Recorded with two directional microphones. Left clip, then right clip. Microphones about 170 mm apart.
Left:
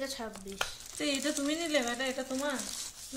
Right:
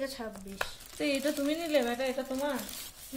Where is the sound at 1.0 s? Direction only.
45° right (ahead or behind).